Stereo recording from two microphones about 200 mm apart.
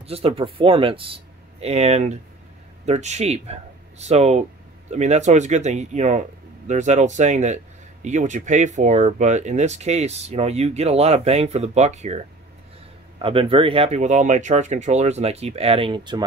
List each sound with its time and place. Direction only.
0.0 s speech: 30° right (ahead or behind)